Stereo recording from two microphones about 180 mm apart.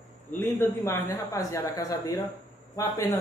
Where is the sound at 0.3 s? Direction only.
10° left (ahead or behind).